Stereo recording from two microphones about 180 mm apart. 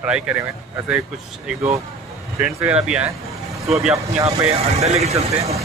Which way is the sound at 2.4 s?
5° right (ahead or behind).